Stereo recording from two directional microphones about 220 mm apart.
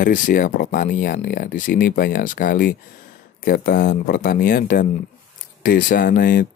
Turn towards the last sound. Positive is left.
turn(degrees=40)  # may be behind; listen again after turning